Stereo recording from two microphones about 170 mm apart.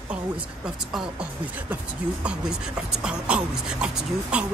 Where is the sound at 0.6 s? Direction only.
5° right (ahead or behind).